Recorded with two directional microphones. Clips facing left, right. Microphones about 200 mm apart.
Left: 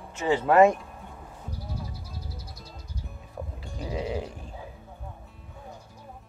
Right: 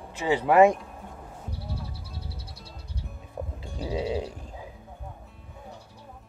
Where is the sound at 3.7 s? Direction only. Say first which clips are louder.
Right 2 dB; 30° right (ahead or behind).